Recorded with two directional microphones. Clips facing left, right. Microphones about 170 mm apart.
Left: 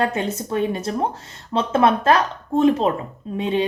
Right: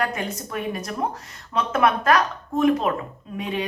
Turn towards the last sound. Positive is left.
turn(degrees=30)  # may be behind; listen again after turning